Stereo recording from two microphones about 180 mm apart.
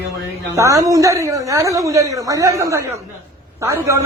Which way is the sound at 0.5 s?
15° right (ahead or behind).